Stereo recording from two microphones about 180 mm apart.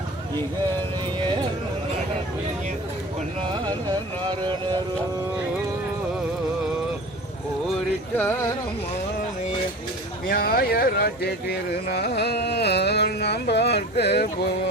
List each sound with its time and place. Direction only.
3.5 s carnatic music: 25° right (ahead or behind)
8.1 s music: 10° left (ahead or behind)
10.2 s speech: 55° left (ahead or behind)